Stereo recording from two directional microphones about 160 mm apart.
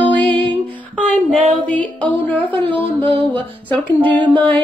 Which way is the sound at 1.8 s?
10° left (ahead or behind).